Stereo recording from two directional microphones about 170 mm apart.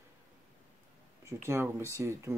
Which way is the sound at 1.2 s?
15° right (ahead or behind).